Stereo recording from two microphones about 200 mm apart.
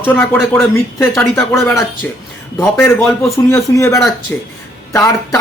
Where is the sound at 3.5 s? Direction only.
15° left (ahead or behind).